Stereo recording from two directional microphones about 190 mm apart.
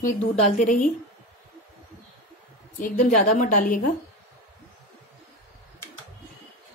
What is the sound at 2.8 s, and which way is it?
A woman's voice, 40° left (ahead or behind).